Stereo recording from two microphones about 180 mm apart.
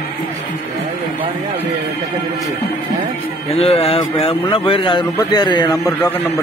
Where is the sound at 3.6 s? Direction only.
30° left (ahead or behind).